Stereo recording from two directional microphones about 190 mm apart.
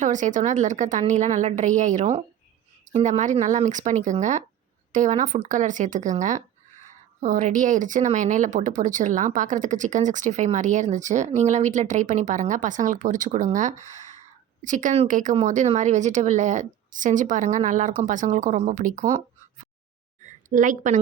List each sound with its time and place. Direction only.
0.0 s speech: 40° right (ahead or behind)
20.5 s speech: 40° right (ahead or behind)